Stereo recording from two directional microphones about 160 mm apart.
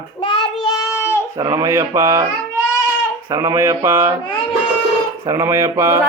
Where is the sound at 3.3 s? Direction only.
20° right (ahead or behind).